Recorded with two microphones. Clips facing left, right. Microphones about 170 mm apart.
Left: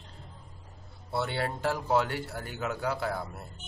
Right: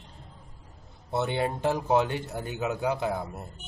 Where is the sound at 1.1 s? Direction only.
20° right (ahead or behind).